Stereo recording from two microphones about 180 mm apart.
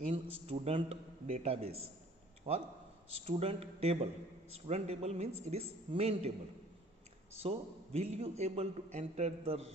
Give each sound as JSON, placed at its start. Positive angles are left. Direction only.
{"t": 0.1, "sound": "a man's voice", "side_deg": -30}
{"t": 7.3, "sound": "a man's voice", "side_deg": -35}